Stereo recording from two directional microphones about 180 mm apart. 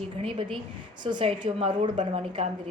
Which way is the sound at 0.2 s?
30° right (ahead or behind).